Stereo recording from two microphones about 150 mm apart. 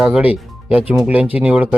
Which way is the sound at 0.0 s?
5° right (ahead or behind).